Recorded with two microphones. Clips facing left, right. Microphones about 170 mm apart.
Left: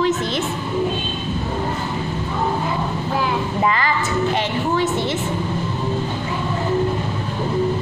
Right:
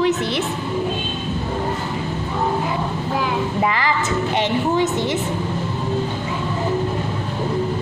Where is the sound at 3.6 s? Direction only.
15° right (ahead or behind).